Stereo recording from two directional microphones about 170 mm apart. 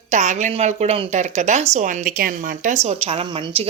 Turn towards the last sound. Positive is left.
turn(degrees=-35)  # may be behind; listen again after turning